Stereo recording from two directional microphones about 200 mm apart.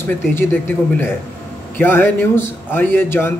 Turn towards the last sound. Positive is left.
turn(degrees=10)  # may be behind; listen again after turning